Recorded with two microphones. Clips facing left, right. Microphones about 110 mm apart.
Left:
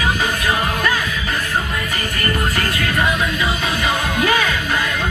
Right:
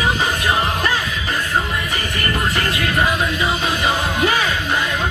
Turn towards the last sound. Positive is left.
turn(degrees=-30)  # may be behind; listen again after turning